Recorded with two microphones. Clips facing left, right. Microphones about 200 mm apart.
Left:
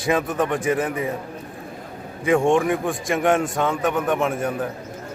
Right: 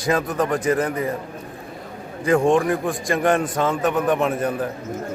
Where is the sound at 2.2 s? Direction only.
Centre (ahead or behind).